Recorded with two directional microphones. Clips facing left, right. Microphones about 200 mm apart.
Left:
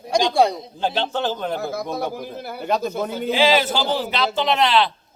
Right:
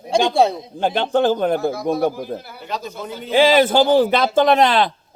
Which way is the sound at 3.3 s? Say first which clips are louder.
Right 6 dB; 50° right (ahead or behind).